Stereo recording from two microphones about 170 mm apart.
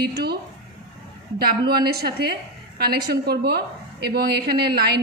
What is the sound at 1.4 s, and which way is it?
A woman's voice, 65° right (ahead or behind).